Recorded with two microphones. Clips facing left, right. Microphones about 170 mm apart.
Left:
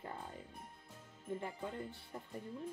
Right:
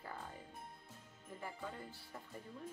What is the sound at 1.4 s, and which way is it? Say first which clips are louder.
Music: left 4 dB; 20° left (ahead or behind).